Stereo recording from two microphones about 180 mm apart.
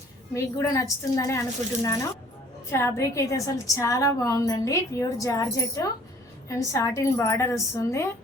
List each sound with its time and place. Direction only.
0.3 s a woman's voice: 20° left (ahead or behind)